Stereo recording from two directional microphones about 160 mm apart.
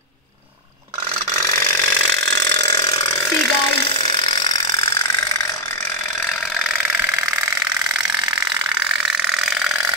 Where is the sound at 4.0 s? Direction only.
35° left (ahead or behind).